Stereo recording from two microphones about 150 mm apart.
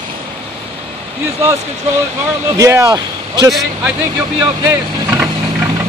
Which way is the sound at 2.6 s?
20° right (ahead or behind).